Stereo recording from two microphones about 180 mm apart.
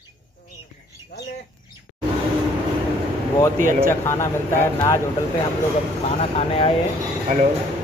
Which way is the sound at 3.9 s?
15° left (ahead or behind).